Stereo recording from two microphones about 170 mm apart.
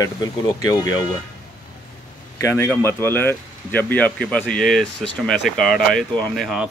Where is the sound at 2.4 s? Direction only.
15° left (ahead or behind); by 6.6 s centre (ahead or behind).